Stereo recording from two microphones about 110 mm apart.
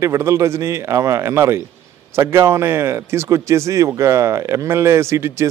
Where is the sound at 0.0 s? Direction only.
25° right (ahead or behind).